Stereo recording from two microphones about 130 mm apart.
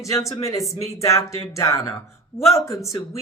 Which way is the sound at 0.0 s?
25° left (ahead or behind).